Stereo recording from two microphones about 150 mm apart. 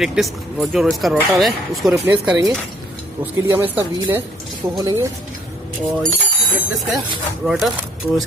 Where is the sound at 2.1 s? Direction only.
20° right (ahead or behind).